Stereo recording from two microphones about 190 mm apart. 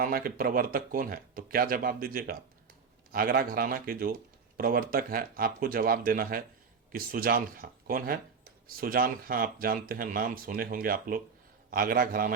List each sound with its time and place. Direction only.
0.0 s speech: 50° right (ahead or behind)